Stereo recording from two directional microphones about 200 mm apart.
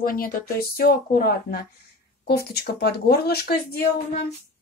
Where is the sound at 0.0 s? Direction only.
45° left (ahead or behind).